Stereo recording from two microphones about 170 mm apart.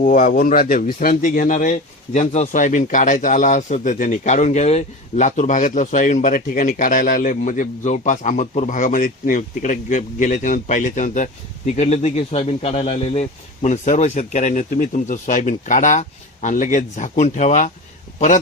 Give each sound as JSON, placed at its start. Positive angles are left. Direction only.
{"t": 0.0, "sound": "speech", "side_deg": 50}